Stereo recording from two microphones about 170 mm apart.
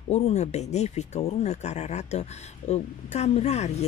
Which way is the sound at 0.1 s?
40° left (ahead or behind).